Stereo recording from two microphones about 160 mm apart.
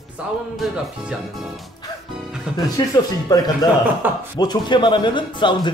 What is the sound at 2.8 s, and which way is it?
Speech, 25° left (ahead or behind).